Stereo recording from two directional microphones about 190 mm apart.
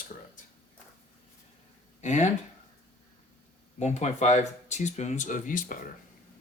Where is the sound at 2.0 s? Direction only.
40° left (ahead or behind).